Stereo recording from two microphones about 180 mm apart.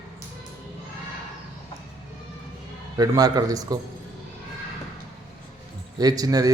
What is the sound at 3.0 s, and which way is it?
Speech, 20° right (ahead or behind).